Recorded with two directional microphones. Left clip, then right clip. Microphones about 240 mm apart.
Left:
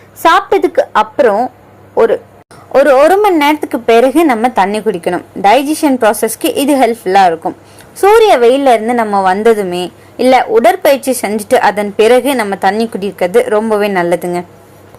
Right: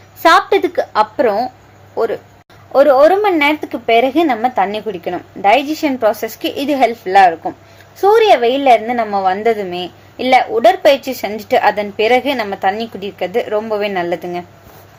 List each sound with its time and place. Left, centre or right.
0.2 s a woman's voice: centre
2.7 s a woman's voice: centre